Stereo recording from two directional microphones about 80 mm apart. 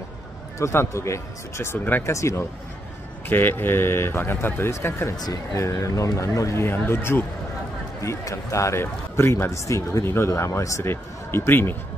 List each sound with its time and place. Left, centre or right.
0.6 s speech: left
3.3 s speech: left
5.1 s a man's voice: left
6.6 s speech: left
8.0 s speech: left